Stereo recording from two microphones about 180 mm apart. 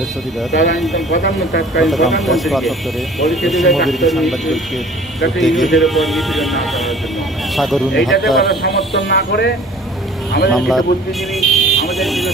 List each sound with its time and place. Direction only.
0.5 s speech: 75° left (ahead or behind)
1.8 s speech: centre (ahead or behind)
8.6 s speech: 70° left (ahead or behind)
10.5 s speech: centre (ahead or behind)
11.3 s vehicle: centre (ahead or behind)